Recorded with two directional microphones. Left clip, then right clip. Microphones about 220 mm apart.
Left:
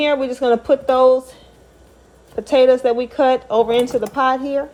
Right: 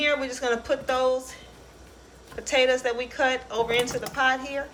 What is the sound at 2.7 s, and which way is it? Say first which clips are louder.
A woman's voice: left 10 dB; 15° left (ahead or behind).